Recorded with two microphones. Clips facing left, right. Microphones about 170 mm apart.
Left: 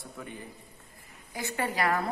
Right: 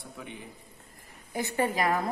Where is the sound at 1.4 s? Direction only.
20° right (ahead or behind).